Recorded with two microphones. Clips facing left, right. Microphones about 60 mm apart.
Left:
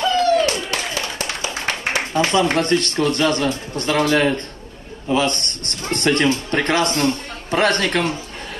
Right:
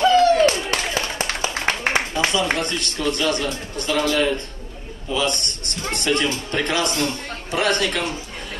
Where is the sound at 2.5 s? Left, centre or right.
Left.